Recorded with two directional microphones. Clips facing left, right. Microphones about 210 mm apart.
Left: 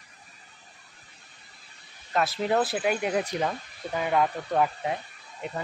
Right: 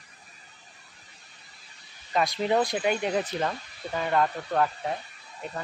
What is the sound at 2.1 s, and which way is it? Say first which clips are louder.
Speech: even; 5° left (ahead or behind).